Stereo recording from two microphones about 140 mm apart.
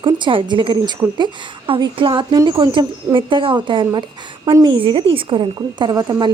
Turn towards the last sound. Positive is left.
turn(degrees=-30)  # may be behind; listen again after turning